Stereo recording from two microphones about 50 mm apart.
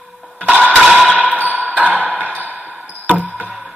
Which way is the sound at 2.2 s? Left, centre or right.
Right.